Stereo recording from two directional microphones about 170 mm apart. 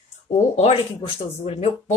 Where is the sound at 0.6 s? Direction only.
35° left (ahead or behind).